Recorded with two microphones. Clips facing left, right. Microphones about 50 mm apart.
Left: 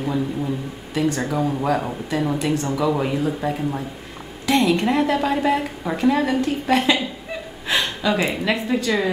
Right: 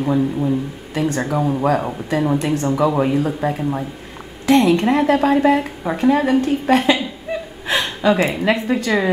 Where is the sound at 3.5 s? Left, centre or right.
Centre.